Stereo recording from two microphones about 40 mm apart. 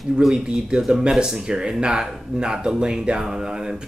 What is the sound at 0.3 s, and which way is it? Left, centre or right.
Speech, right.